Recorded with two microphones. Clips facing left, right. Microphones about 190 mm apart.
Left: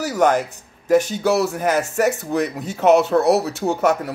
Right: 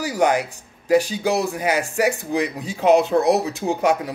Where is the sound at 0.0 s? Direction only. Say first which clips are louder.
Left 2 dB; 10° right (ahead or behind).